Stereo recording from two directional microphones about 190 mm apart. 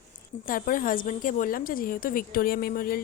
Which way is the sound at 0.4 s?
45° left (ahead or behind).